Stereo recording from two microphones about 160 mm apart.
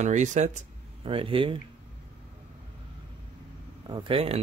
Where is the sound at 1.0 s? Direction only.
35° right (ahead or behind).